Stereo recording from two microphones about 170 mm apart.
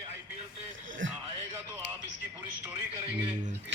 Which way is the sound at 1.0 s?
90° right.